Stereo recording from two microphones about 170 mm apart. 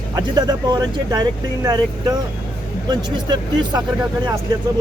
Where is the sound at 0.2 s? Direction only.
25° right (ahead or behind).